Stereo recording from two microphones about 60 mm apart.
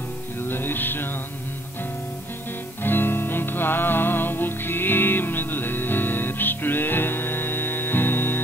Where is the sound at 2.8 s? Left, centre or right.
Left.